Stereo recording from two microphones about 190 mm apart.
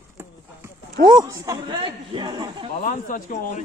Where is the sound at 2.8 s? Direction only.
45° left (ahead or behind).